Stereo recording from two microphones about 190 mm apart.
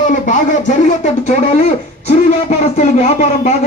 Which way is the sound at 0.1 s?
40° left (ahead or behind).